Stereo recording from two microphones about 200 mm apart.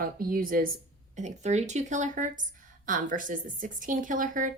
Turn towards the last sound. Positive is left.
turn(degrees=-40)  # may be behind; listen again after turning